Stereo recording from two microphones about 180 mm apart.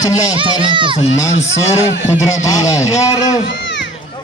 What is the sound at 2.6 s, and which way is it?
Speech, 20° left (ahead or behind).